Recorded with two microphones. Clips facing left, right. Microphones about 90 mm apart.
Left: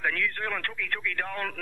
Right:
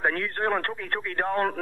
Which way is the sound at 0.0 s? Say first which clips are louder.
Right 4 dB; 35° right (ahead or behind).